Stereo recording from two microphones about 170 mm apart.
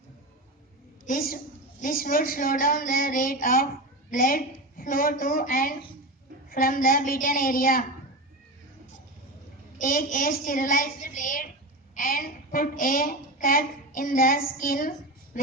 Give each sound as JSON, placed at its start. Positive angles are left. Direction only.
{"t": 1.0, "sound": "speech", "side_deg": 55}
{"t": 9.7, "sound": "a woman's voice", "side_deg": 55}